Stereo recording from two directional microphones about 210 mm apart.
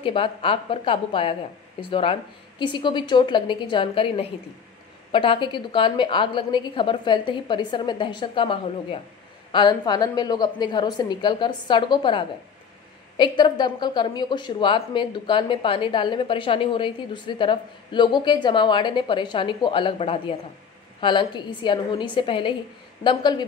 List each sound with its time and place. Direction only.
0.0 s speech: 25° left (ahead or behind)